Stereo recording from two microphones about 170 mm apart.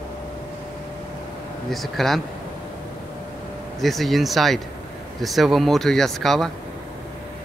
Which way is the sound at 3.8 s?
Centre (ahead or behind).